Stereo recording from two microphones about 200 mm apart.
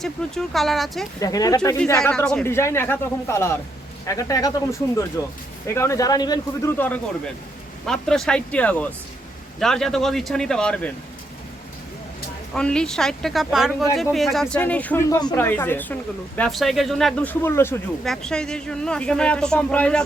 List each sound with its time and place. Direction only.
0.0 s a woman's voice: centre (ahead or behind)
1.2 s speech: 20° left (ahead or behind)
2.0 s a woman's voice: 5° left (ahead or behind)
12.5 s a woman's voice: 5° left (ahead or behind)